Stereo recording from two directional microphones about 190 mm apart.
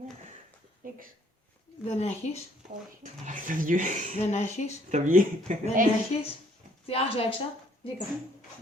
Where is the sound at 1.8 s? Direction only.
35° left (ahead or behind).